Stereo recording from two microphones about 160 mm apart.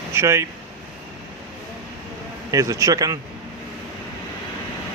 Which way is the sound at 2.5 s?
20° right (ahead or behind).